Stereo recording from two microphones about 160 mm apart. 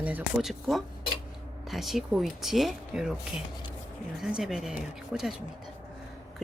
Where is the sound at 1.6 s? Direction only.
Centre (ahead or behind).